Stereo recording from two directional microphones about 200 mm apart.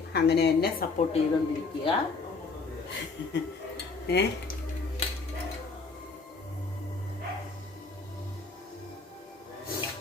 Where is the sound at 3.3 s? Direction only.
55° left (ahead or behind).